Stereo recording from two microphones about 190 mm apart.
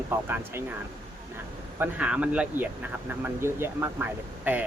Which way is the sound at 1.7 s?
10° right (ahead or behind).